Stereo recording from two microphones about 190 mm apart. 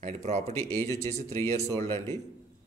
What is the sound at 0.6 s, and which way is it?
Speech, 10° left (ahead or behind).